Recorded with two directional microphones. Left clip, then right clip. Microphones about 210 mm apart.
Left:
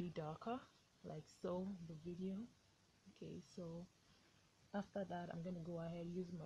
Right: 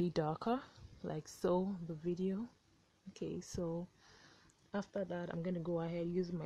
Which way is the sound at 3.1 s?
45° right (ahead or behind).